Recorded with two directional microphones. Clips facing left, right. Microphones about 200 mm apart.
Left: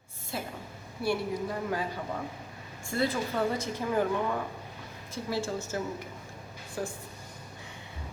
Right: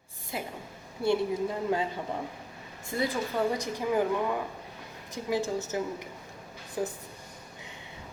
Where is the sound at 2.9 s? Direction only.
15° right (ahead or behind).